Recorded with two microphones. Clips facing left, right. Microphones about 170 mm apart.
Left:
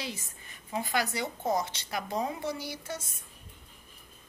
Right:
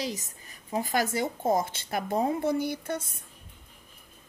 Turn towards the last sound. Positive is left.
turn(degrees=-55)  # may be behind; listen again after turning